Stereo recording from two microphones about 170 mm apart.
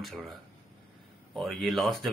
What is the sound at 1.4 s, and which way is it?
Speech, centre (ahead or behind).